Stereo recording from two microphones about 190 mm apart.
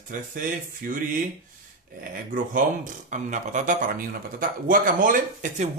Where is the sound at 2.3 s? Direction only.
45° right (ahead or behind).